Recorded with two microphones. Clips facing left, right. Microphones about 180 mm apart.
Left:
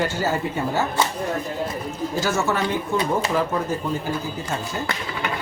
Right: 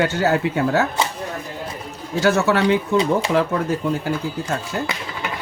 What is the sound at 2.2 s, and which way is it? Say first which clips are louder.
Speech: right 7 dB; 70° right (ahead or behind).